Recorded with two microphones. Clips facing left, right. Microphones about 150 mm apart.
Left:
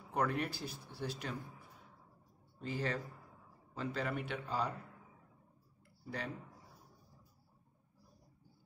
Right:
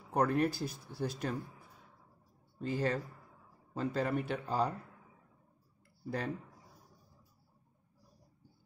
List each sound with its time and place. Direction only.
0.1 s speech: 40° right (ahead or behind)
2.6 s speech: 45° right (ahead or behind)
6.0 s speech: 45° right (ahead or behind)